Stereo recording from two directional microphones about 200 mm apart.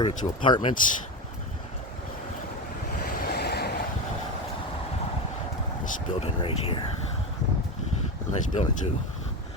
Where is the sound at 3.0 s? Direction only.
50° left (ahead or behind).